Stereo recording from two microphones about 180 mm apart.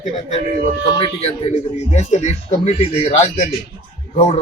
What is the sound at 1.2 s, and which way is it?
Speech, 40° left (ahead or behind).